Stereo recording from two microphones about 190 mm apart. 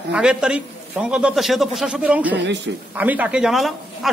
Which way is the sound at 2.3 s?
65° right (ahead or behind).